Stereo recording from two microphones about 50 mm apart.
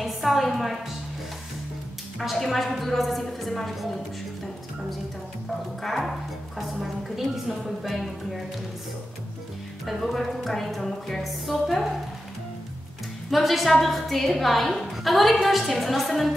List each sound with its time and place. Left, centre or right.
0.0 s a sound: centre
2.1 s a woman's voice: centre
5.8 s a woman's voice: centre
9.8 s a woman's voice: centre
13.3 s a woman's voice: centre